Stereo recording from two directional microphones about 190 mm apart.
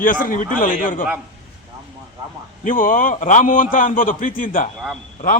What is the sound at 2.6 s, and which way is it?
A man's voice, 45° left (ahead or behind).